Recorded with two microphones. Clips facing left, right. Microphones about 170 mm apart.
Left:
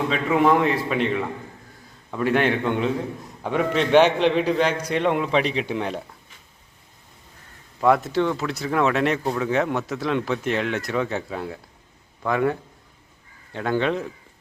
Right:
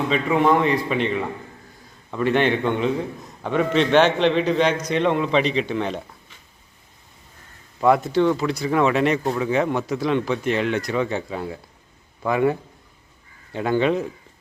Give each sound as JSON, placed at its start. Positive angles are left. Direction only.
{"t": 0.1, "sound": "a man's voice", "side_deg": 0}
{"t": 7.8, "sound": "a man's voice", "side_deg": 0}